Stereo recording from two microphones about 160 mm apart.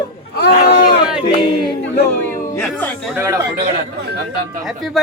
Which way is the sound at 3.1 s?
15° right (ahead or behind).